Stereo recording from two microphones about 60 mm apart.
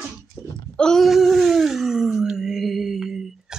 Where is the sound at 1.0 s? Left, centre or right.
Centre.